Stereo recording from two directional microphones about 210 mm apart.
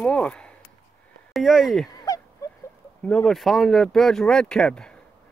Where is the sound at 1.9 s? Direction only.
15° left (ahead or behind).